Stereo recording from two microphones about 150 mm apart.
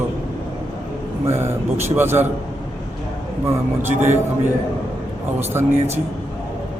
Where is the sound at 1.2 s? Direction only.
15° right (ahead or behind).